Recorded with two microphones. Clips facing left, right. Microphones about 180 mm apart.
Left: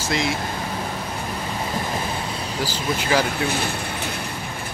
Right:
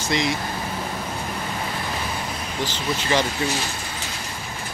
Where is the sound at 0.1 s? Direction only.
Centre (ahead or behind).